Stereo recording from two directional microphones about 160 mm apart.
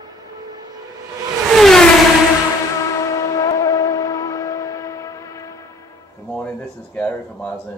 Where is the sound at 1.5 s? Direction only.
Centre (ahead or behind).